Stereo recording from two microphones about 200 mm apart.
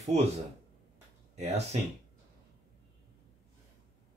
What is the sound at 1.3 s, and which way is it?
Speech, 35° right (ahead or behind).